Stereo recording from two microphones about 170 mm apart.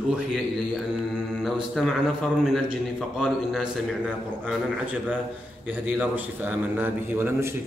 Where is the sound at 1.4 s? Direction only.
Centre (ahead or behind).